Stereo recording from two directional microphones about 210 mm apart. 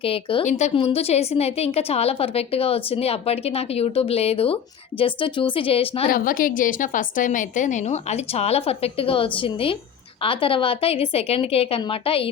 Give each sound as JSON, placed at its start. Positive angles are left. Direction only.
{"t": 0.0, "sound": "a woman's voice", "side_deg": 25}
{"t": 6.1, "sound": "a woman's voice", "side_deg": 40}